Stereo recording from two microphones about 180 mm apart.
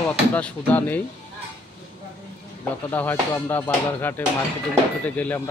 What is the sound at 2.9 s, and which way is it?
Speech, 10° left (ahead or behind).